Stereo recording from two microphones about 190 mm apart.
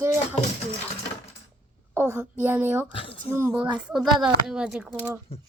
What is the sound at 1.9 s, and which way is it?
Speech, 15° right (ahead or behind).